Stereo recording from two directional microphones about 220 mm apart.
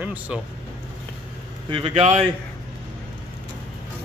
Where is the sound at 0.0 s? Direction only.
5° right (ahead or behind).